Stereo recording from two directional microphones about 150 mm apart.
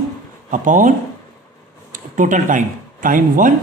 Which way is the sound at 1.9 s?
60° right (ahead or behind).